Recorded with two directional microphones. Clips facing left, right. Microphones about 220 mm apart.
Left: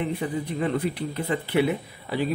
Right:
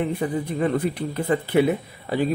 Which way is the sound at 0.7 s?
45° right (ahead or behind).